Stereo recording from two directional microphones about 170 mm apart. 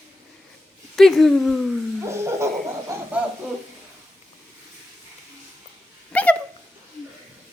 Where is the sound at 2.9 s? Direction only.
15° right (ahead or behind).